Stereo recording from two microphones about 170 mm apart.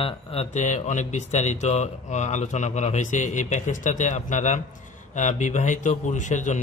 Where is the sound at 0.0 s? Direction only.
35° left (ahead or behind).